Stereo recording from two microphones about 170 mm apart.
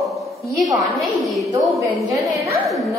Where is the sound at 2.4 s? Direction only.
Centre (ahead or behind).